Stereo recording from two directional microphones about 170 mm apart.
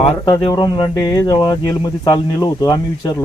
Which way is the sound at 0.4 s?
25° left (ahead or behind).